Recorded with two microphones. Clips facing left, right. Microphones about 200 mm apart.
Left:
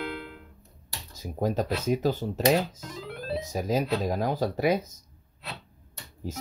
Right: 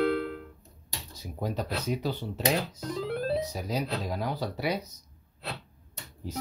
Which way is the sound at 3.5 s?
45° left (ahead or behind).